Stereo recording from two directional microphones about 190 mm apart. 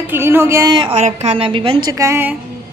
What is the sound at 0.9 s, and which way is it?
A woman's voice, 35° right (ahead or behind).